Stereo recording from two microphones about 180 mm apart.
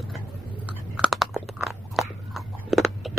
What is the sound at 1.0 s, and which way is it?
Chewing, centre (ahead or behind).